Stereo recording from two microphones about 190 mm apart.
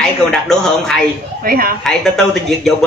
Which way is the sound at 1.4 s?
50° right (ahead or behind).